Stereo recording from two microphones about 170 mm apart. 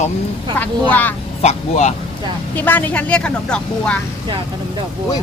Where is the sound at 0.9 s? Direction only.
10° left (ahead or behind).